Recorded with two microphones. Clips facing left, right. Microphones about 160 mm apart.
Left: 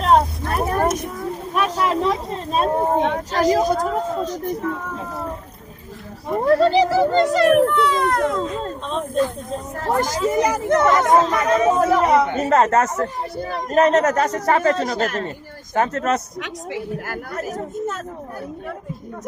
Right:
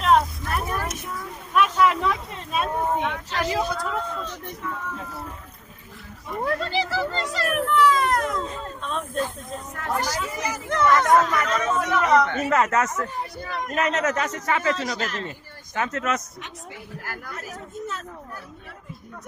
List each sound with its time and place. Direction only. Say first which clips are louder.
0.0 s vehicle: left 3 dB; 30° left (ahead or behind)
0.7 s speech: left 9 dB; 40° left (ahead or behind)
6.2 s a child's voice: left 11 dB; 35° left (ahead or behind); by 11.8 s 15° left (ahead or behind)
11.8 s speech: left 4 dB; 35° left (ahead or behind)
17.1 s speech: left 8 dB; 45° left (ahead or behind)